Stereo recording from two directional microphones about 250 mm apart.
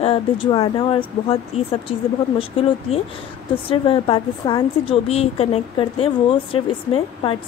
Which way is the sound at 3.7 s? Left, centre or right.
Left.